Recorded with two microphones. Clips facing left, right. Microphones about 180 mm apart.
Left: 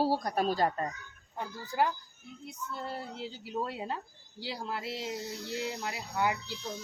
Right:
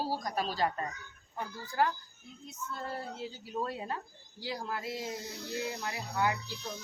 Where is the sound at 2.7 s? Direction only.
15° left (ahead or behind).